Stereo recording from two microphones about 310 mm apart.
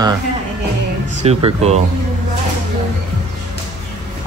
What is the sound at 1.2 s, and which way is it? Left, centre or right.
Speech, centre.